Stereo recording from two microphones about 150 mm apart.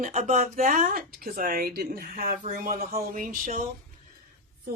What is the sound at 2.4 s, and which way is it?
Speech, 65° right (ahead or behind).